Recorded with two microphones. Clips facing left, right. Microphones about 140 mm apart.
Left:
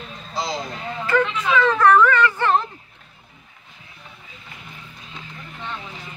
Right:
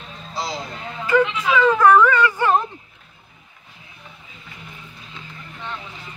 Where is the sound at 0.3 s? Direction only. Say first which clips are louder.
Left 1 dB; 5° right (ahead or behind).